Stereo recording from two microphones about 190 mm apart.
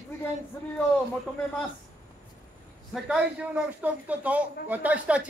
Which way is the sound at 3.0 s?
5° right (ahead or behind).